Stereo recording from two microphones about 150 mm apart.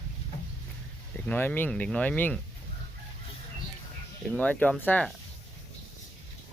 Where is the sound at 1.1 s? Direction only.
10° left (ahead or behind).